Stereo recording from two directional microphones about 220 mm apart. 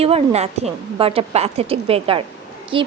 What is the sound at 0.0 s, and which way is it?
A woman's voice, 30° right (ahead or behind).